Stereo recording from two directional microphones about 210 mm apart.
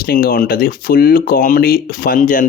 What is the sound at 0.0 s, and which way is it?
Speech, 45° left (ahead or behind).